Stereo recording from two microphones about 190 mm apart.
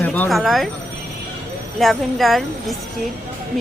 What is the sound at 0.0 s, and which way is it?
Speech, 5° left (ahead or behind).